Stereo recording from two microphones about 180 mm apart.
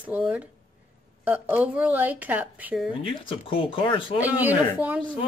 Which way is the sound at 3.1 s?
30° left (ahead or behind).